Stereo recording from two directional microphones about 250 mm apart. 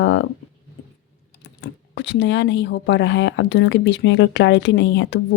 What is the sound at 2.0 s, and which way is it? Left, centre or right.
Speech, left.